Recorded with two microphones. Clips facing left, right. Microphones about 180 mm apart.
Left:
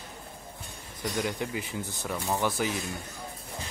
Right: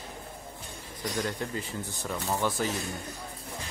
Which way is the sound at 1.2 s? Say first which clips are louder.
Left 1 dB; 10° left (ahead or behind).